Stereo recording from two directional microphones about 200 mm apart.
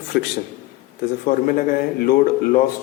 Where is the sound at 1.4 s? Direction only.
45° left (ahead or behind).